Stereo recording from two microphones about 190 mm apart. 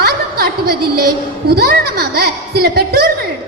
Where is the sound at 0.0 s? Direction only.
55° right (ahead or behind).